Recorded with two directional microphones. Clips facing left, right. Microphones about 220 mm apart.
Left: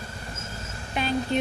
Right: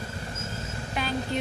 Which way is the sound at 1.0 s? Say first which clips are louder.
Left 3 dB; 25° left (ahead or behind).